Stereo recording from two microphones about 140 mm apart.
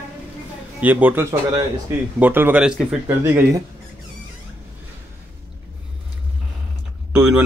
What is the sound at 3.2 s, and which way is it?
Speech, 20° right (ahead or behind).